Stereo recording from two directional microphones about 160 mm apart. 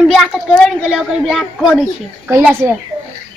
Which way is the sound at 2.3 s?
10° right (ahead or behind).